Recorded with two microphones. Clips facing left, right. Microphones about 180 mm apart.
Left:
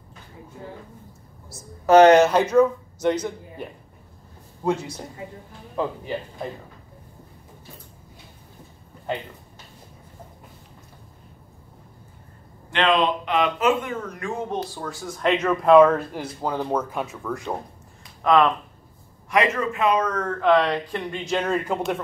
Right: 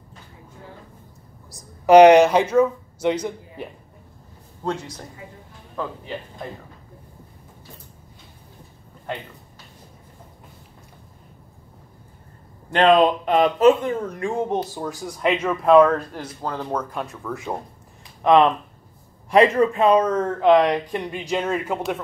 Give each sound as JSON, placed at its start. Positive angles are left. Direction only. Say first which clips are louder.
{"t": 1.5, "sound": "a man's voice", "louder": "right 3 dB", "side_deg": -15}
{"t": 4.6, "sound": "a man's voice", "louder": "left 3 dB", "side_deg": 10}
{"t": 12.7, "sound": "a man's voice", "louder": "right 5 dB", "side_deg": -45}
{"t": 18.2, "sound": "speech", "louder": "right 3 dB", "side_deg": -25}